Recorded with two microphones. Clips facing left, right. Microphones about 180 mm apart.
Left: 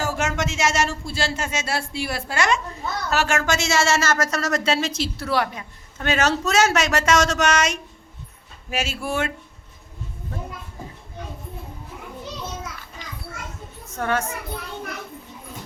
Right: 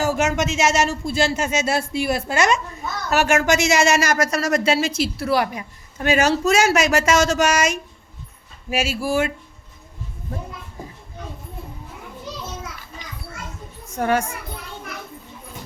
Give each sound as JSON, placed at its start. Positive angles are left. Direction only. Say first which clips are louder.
{"t": 0.0, "sound": "a woman's voice", "louder": "right 4 dB", "side_deg": -20}
{"t": 13.9, "sound": "a child's voice", "louder": "right 4 dB", "side_deg": -15}